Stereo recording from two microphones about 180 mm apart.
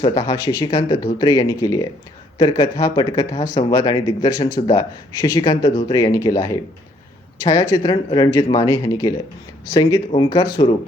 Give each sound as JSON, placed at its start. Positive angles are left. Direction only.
{"t": 0.0, "sound": "speech", "side_deg": 20}